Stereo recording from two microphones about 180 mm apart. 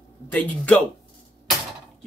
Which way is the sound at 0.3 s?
10° left (ahead or behind).